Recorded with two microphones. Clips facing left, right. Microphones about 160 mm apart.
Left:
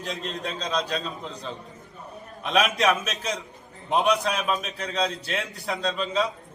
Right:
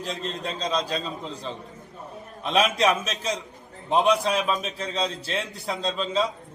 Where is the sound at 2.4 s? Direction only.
30° right (ahead or behind).